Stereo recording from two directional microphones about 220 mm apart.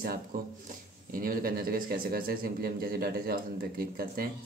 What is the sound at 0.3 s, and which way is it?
Speech, 40° right (ahead or behind).